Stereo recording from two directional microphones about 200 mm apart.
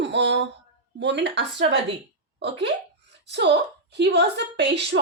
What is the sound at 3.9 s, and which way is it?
A woman's voice, 55° right (ahead or behind).